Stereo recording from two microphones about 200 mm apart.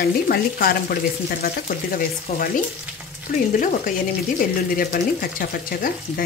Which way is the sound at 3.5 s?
40° left (ahead or behind).